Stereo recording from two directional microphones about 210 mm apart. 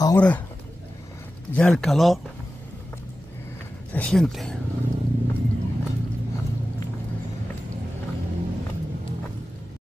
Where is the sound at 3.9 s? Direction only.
5° left (ahead or behind).